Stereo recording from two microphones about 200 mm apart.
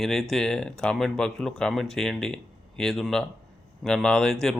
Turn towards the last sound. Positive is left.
turn(degrees=0)  # may be behind; listen again after turning